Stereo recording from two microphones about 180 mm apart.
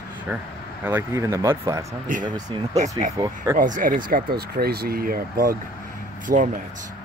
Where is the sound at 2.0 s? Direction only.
45° right (ahead or behind).